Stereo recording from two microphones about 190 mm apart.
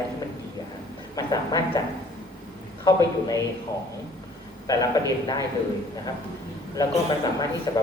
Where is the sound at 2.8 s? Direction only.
20° left (ahead or behind).